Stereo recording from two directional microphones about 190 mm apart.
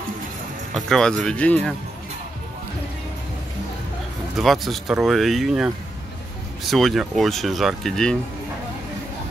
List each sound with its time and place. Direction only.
0.7 s speech: centre (ahead or behind)
4.4 s speech: centre (ahead or behind)
6.7 s speech: centre (ahead or behind)